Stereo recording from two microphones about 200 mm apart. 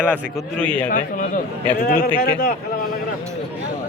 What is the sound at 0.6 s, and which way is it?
Speech, 5° left (ahead or behind).